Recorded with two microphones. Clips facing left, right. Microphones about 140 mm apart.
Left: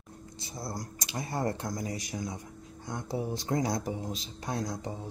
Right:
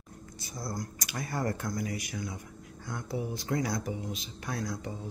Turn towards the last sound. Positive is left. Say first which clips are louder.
# left 1 dB
turn(degrees=30)  # may be behind; listen again after turning